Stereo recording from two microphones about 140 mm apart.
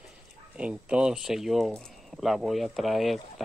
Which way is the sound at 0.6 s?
10° right (ahead or behind).